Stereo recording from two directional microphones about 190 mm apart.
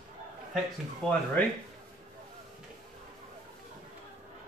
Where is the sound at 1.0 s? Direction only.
5° left (ahead or behind).